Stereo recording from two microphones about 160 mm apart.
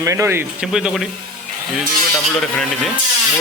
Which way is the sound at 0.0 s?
20° right (ahead or behind).